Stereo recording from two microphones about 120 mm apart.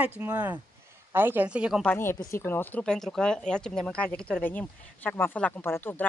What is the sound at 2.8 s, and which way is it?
A woman's voice, 5° left (ahead or behind).